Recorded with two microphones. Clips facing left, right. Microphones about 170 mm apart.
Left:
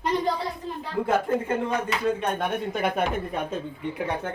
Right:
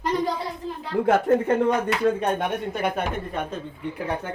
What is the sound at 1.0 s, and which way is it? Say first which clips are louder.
Speech: right 5 dB; 65° right (ahead or behind).